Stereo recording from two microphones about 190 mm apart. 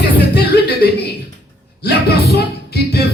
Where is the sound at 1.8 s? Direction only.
60° left (ahead or behind).